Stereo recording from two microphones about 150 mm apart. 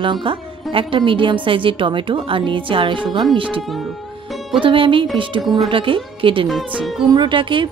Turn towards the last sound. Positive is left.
turn(degrees=-35)  # may be behind; listen again after turning